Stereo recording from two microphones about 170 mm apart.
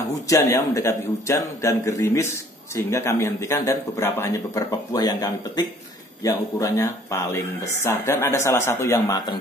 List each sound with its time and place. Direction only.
0.3 s speech: 20° left (ahead or behind)